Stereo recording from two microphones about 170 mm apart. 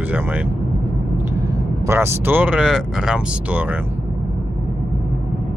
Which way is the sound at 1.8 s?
15° right (ahead or behind).